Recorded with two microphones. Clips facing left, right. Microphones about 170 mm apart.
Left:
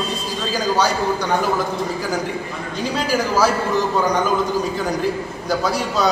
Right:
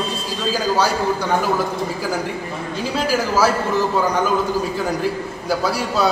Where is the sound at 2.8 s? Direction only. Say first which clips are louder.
Even; 5° right (ahead or behind).